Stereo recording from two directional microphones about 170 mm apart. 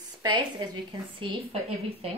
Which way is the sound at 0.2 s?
25° right (ahead or behind).